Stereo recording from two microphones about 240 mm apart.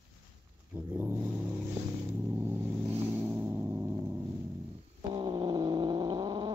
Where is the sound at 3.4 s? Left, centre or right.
Centre.